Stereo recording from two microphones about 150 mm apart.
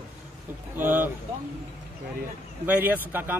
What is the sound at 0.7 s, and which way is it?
Speech, 10° right (ahead or behind).